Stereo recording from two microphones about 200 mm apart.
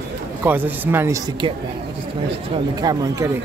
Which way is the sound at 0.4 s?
10° right (ahead or behind).